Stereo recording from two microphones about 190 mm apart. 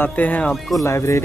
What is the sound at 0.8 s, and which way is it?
Speech, 15° left (ahead or behind).